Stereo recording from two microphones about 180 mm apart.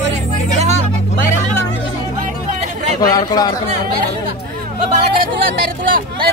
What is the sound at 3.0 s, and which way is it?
Speech, 20° left (ahead or behind).